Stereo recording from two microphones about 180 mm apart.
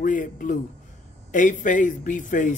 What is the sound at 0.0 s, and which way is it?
A man's voice, 45° left (ahead or behind).